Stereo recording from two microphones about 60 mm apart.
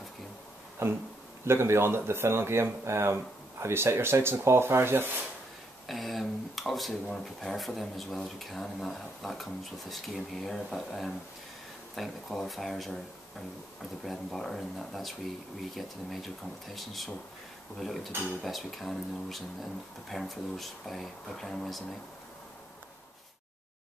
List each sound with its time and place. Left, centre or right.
0.8 s speech: right
5.9 s speech: centre
14.0 s speech: centre